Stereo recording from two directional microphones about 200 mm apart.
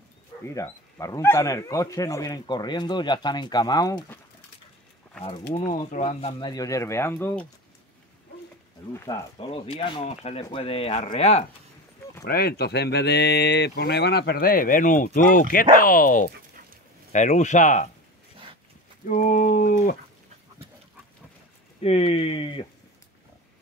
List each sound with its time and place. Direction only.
0.6 s speech: 15° left (ahead or behind)
5.5 s speech: 35° left (ahead or behind)
6.4 s speech: 20° left (ahead or behind)
9.4 s speech: 30° left (ahead or behind)
12.3 s speech: 50° left (ahead or behind)
19.0 s speech: 40° left (ahead or behind)
21.8 s speech: 30° left (ahead or behind)